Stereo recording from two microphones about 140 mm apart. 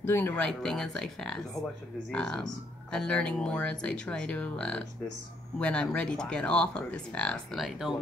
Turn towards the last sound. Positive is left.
turn(degrees=-5)  # may be behind; listen again after turning